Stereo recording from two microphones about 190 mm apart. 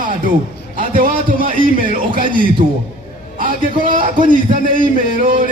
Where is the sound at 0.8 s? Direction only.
45° right (ahead or behind).